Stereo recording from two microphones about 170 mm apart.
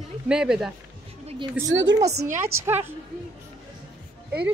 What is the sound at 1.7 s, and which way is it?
Speech, 90° right.